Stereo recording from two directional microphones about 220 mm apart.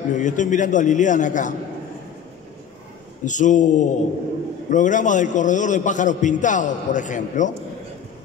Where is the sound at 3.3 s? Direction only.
35° left (ahead or behind).